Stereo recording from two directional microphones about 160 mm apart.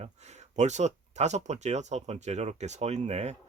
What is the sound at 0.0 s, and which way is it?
Speech, 45° right (ahead or behind).